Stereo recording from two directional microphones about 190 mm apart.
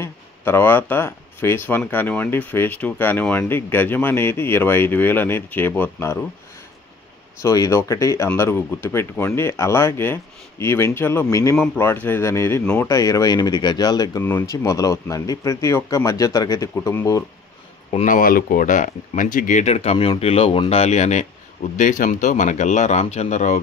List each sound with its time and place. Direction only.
0.0 s speech: 10° left (ahead or behind)
7.4 s speech: 15° left (ahead or behind)
18.0 s speech: 45° left (ahead or behind)